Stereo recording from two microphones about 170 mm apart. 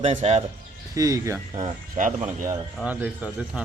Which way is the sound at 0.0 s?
35° right (ahead or behind).